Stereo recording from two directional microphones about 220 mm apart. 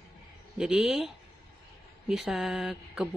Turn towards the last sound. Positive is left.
turn(degrees=0)  # may be behind; listen again after turning